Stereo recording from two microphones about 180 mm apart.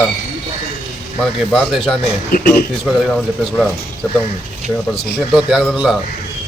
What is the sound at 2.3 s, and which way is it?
Speech, 55° left (ahead or behind).